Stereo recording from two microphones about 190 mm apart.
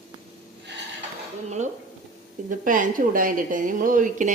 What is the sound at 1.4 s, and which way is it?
A woman's voice, 40° right (ahead or behind).